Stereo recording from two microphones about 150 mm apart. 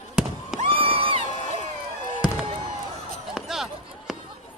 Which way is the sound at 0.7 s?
40° right (ahead or behind).